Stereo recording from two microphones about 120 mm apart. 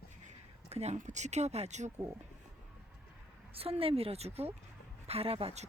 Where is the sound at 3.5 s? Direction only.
55° right (ahead or behind).